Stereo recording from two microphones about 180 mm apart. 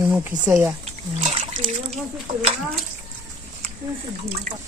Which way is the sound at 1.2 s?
35° right (ahead or behind).